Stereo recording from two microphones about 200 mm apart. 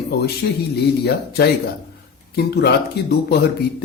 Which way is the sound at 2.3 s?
55° left (ahead or behind).